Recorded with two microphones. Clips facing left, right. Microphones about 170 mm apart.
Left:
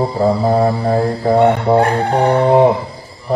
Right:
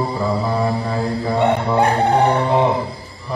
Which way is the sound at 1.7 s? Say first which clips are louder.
Left 6 dB; 65° left (ahead or behind).